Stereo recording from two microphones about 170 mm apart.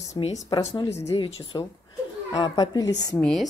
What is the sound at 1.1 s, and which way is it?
A woman's voice, 30° left (ahead or behind).